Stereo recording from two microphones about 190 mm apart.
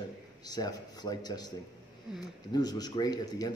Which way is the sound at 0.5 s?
20° left (ahead or behind).